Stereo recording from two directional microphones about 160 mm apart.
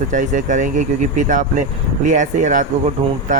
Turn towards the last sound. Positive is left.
turn(degrees=-50)  # may be behind; listen again after turning